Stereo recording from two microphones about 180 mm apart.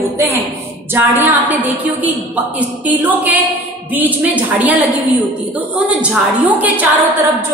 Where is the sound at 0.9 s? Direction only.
10° right (ahead or behind).